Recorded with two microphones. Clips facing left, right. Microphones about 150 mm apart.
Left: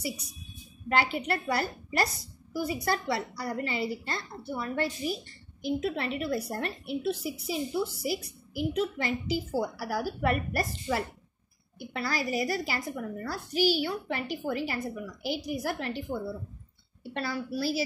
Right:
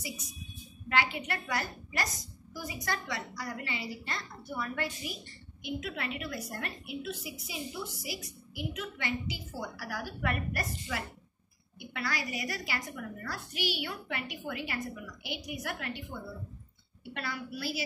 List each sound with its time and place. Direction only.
0.8 s a woman's voice: 35° left (ahead or behind)